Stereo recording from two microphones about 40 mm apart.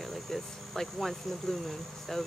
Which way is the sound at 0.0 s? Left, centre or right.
Centre.